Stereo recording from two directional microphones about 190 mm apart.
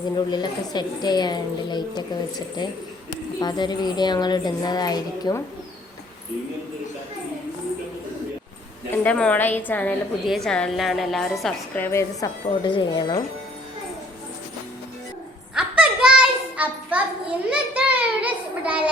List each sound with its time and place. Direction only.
0.2 s a woman's voice: 25° left (ahead or behind)
8.9 s a woman's voice: 5° left (ahead or behind)
12.6 s a woman's voice: 25° left (ahead or behind)
15.5 s a sound: 5° right (ahead or behind)